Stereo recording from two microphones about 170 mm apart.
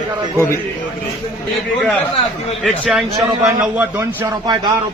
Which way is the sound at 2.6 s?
5° right (ahead or behind).